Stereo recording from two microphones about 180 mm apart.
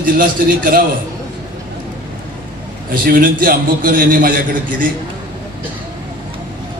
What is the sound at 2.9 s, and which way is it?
A man's voice, 50° right (ahead or behind).